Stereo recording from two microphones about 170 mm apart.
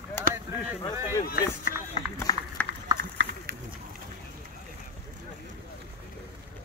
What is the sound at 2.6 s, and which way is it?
Run, 10° left (ahead or behind).